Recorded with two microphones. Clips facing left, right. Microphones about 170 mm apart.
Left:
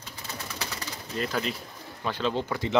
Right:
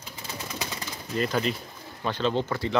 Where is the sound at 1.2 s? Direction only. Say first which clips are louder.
Right 3 dB; centre (ahead or behind); by 2.8 s 15° left (ahead or behind).